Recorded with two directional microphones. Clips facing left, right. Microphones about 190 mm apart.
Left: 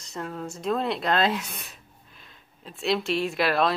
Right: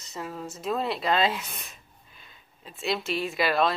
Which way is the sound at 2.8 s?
Centre (ahead or behind).